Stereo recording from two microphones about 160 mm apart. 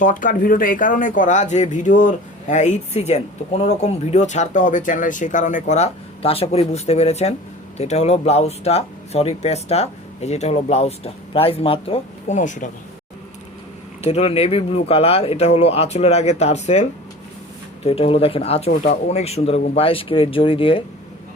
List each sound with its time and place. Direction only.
0.0 s speech: 55° left (ahead or behind)
14.0 s speech: 40° left (ahead or behind)